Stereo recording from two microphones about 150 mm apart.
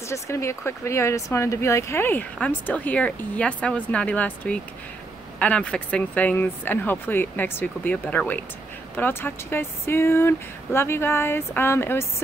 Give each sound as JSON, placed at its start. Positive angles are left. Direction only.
{"t": 0.1, "sound": "speech", "side_deg": 20}